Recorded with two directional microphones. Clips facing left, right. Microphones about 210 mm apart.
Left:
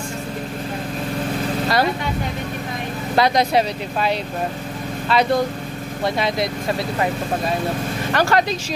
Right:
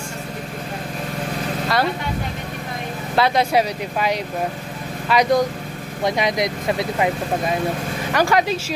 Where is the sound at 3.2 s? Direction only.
5° right (ahead or behind).